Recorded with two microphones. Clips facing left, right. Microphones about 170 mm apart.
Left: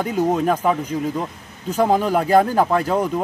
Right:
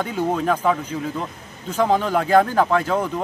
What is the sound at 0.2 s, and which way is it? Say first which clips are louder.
A man's voice: left 2 dB; 15° left (ahead or behind).